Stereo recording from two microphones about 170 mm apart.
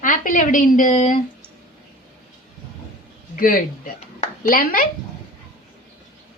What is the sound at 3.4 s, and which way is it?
Speech, 55° left (ahead or behind).